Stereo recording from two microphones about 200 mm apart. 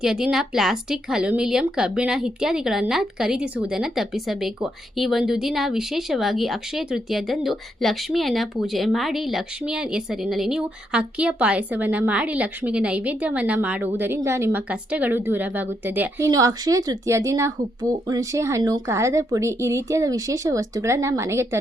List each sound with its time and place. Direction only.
0.0 s a woman's voice: 5° right (ahead or behind)